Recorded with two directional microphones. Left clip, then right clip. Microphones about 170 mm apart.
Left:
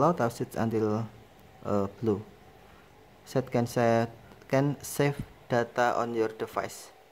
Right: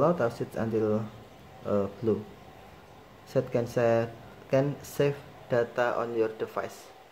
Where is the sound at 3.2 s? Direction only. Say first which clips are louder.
Right 1 dB; 30° left (ahead or behind).